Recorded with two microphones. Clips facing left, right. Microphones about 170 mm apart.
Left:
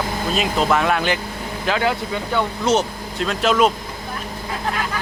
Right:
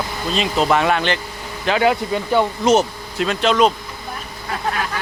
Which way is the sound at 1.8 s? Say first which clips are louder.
Right 4 dB; 15° right (ahead or behind).